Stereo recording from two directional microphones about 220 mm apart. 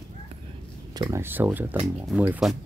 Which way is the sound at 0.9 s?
15° right (ahead or behind).